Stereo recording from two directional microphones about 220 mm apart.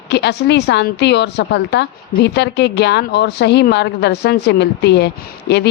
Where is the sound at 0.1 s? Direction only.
50° left (ahead or behind).